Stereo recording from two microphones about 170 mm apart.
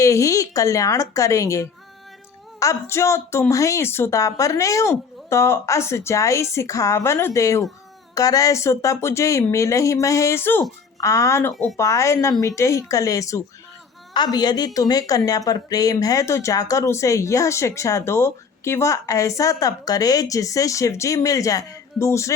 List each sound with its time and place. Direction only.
0.0 s a woman's voice: 20° left (ahead or behind)